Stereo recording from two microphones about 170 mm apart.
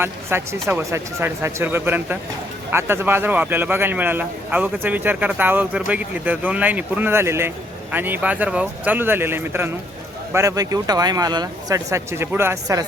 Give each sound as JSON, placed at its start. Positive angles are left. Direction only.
{"t": 0.0, "sound": "a man's voice", "side_deg": -15}